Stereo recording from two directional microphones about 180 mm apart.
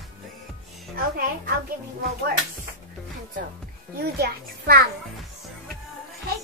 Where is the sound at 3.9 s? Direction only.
60° right (ahead or behind).